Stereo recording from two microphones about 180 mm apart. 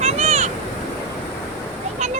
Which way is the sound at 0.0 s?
35° right (ahead or behind).